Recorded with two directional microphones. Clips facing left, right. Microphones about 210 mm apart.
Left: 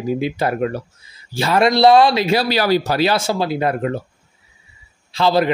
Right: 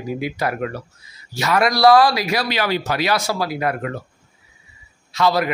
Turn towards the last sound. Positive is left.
turn(degrees=30)  # may be behind; listen again after turning